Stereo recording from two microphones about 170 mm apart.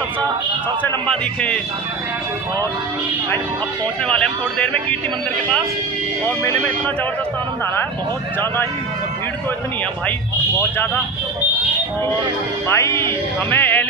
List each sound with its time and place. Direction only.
0.8 s speech: 5° left (ahead or behind)
4.1 s speech: 5° left (ahead or behind)
6.2 s speech: 15° left (ahead or behind)
12.6 s speech: 15° left (ahead or behind)